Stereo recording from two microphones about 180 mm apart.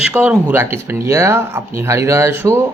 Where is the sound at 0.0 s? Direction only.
5° right (ahead or behind).